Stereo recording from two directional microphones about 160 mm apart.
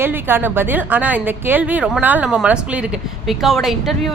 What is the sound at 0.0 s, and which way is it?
Speech, 15° right (ahead or behind).